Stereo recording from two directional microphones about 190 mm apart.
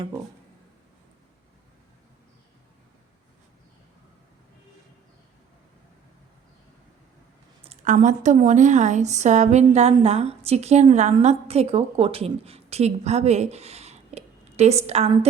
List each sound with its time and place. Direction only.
7.6 s a woman's voice: 35° right (ahead or behind)